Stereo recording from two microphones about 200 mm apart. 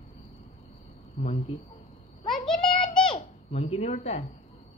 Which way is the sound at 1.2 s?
40° left (ahead or behind).